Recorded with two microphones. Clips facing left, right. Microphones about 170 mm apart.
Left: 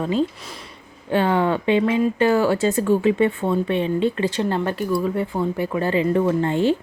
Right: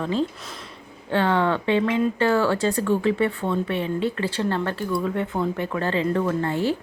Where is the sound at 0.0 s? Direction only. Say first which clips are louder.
Left 3 dB; 15° left (ahead or behind).